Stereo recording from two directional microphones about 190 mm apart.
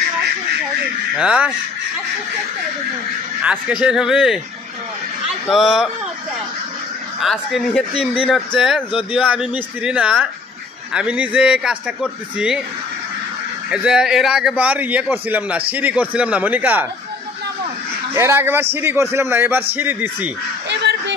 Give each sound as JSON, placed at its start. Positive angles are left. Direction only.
{"t": 1.1, "sound": "a man's voice", "side_deg": -5}
{"t": 3.4, "sound": "a man's voice", "side_deg": -5}
{"t": 5.5, "sound": "a man's voice", "side_deg": 0}
{"t": 7.2, "sound": "a man's voice", "side_deg": 0}
{"t": 13.7, "sound": "a man's voice", "side_deg": -5}
{"t": 18.1, "sound": "a man's voice", "side_deg": -15}
{"t": 20.6, "sound": "honk", "side_deg": -65}